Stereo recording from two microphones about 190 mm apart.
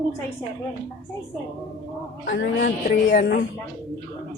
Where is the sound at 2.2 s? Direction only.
50° left (ahead or behind).